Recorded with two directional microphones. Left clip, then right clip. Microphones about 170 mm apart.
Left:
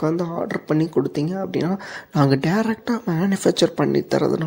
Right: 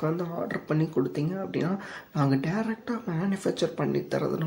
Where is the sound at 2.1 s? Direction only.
50° left (ahead or behind).